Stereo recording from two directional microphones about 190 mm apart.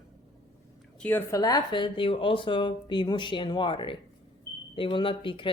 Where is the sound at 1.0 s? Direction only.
10° left (ahead or behind).